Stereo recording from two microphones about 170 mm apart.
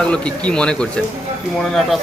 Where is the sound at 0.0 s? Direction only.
5° left (ahead or behind).